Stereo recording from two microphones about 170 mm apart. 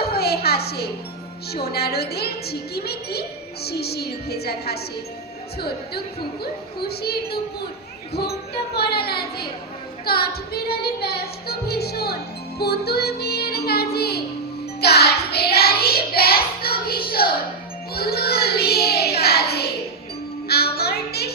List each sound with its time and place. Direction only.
0.0 s a sound: 70° left (ahead or behind)
1.6 s a woman's voice: 70° left (ahead or behind)
8.7 s a woman's voice: 70° left (ahead or behind)
10.1 s music: 65° left (ahead or behind)
14.8 s child singing: 70° left (ahead or behind)
17.9 s a woman's voice: 65° left (ahead or behind)
20.5 s child singing: 65° left (ahead or behind)